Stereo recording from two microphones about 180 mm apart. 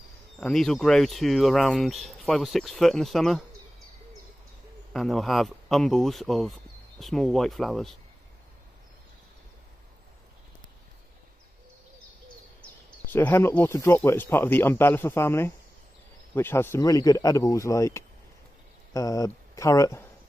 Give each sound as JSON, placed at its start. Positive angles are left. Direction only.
{"t": 0.4, "sound": "speech", "side_deg": 5}
{"t": 4.9, "sound": "speech", "side_deg": 0}
{"t": 13.0, "sound": "speech", "side_deg": 10}